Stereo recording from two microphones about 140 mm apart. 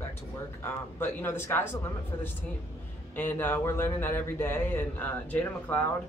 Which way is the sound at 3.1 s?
15° left (ahead or behind).